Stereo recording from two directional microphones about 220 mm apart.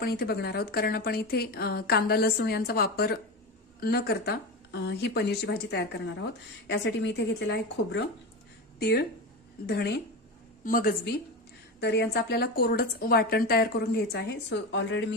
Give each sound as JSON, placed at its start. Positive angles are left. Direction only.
{"t": 0.0, "sound": "a woman's voice", "side_deg": 45}